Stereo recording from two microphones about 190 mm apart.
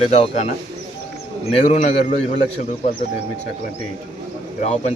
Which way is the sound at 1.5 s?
35° left (ahead or behind).